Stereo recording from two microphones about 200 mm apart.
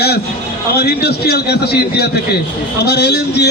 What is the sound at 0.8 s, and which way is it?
A man's voice, 55° left (ahead or behind).